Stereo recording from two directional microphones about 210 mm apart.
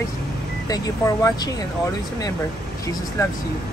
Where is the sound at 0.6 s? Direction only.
15° left (ahead or behind).